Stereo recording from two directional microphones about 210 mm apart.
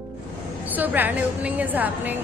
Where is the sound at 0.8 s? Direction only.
10° right (ahead or behind).